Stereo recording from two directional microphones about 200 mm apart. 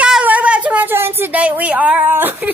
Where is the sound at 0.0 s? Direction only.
5° right (ahead or behind).